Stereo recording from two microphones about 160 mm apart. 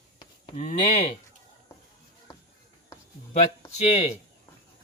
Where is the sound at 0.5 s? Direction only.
50° left (ahead or behind).